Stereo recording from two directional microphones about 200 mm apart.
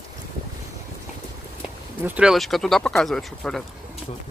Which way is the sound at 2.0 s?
5° right (ahead or behind).